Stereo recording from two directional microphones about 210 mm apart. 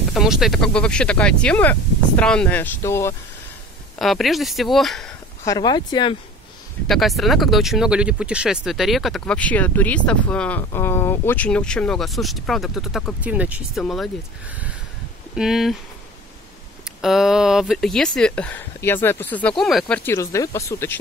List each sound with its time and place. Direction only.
0.1 s speech: centre (ahead or behind)
4.0 s speech: centre (ahead or behind)
5.4 s speech: 20° left (ahead or behind)
6.9 s speech: centre (ahead or behind)
15.3 s speech: centre (ahead or behind)
17.0 s speech: centre (ahead or behind)
20.1 s speech: 15° left (ahead or behind)